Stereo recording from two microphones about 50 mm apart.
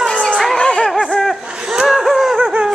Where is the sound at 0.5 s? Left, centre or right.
Centre.